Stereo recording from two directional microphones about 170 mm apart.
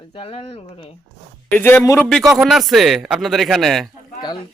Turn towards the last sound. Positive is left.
turn(degrees=25)  # may be behind; listen again after turning